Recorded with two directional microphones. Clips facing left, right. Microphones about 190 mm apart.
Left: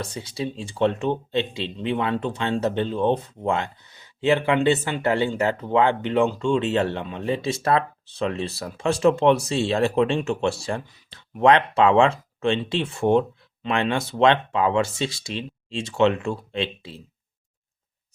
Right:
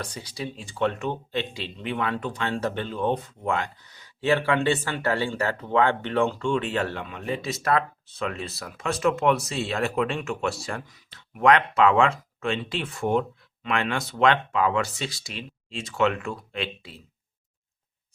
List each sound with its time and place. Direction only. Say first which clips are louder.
0.0 s speech: left 5 dB; 25° left (ahead or behind)